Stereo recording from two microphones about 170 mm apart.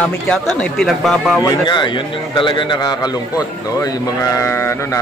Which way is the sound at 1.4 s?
25° left (ahead or behind).